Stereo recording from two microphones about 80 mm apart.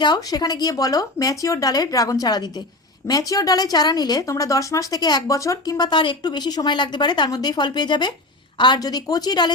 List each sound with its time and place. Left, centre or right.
0.0 s speech: left
4.3 s speech: left
7.3 s speech: left